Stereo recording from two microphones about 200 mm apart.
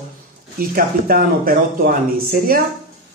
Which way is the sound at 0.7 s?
45° right (ahead or behind).